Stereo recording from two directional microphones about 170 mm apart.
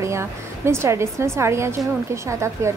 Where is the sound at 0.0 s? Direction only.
15° right (ahead or behind).